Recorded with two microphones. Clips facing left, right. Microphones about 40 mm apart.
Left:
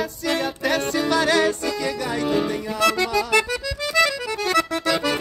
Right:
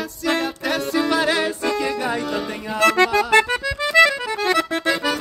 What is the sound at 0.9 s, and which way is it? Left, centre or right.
Music, centre.